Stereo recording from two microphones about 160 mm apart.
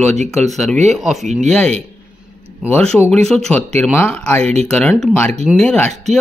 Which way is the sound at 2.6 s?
5° left (ahead or behind).